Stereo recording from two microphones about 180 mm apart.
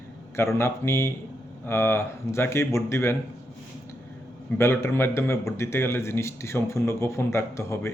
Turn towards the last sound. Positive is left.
turn(degrees=15)  # may be behind; listen again after turning